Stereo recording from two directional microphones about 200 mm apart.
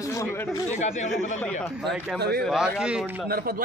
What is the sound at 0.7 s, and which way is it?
Speech, 35° left (ahead or behind).